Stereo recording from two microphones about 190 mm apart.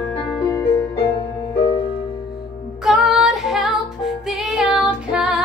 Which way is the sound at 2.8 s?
Centre (ahead or behind).